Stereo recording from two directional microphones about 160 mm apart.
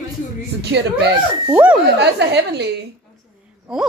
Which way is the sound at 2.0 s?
90° right.